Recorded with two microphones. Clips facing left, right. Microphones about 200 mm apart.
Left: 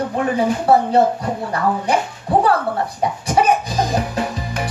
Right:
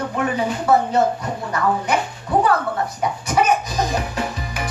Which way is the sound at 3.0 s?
30° left (ahead or behind).